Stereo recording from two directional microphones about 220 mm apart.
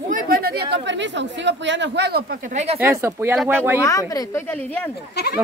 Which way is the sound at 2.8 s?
10° right (ahead or behind).